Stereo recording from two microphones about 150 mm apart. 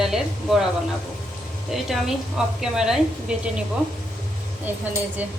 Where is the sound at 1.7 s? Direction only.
Centre (ahead or behind).